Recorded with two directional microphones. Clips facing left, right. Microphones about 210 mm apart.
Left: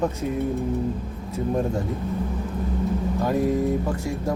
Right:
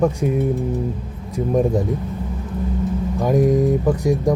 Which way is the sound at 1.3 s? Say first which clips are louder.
Right 6 dB; 15° right (ahead or behind).